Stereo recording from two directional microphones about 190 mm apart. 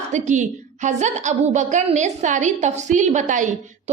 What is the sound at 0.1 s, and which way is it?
A woman's voice, 40° right (ahead or behind).